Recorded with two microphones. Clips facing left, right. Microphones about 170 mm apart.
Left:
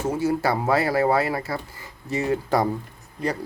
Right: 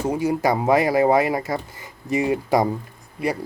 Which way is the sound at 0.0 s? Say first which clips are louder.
Right 2 dB; 15° right (ahead or behind).